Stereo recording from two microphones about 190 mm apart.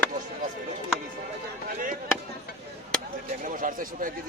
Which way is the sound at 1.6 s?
45° right (ahead or behind).